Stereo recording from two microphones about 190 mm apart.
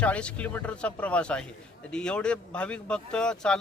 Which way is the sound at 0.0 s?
5° left (ahead or behind).